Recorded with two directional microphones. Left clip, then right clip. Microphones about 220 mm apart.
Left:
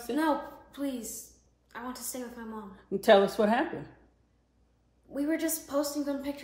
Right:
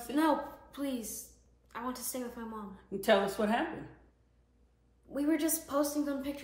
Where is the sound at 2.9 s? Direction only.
45° left (ahead or behind).